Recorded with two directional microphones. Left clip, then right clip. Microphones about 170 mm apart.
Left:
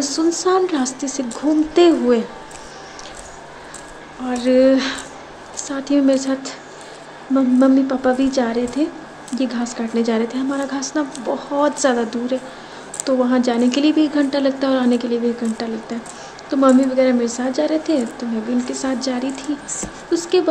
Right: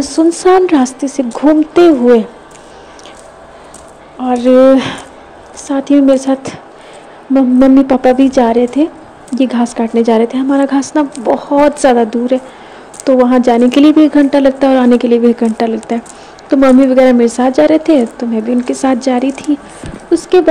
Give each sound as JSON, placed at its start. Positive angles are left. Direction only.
{"t": 0.0, "sound": "speech", "side_deg": -35}
{"t": 4.4, "sound": "speech", "side_deg": -40}